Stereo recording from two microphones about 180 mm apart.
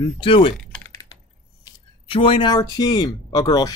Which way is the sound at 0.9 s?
20° left (ahead or behind).